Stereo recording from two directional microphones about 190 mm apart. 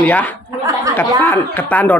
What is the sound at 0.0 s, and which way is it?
A man's voice, 10° left (ahead or behind).